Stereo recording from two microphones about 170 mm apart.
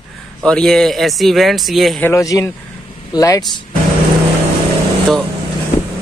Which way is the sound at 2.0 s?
20° left (ahead or behind).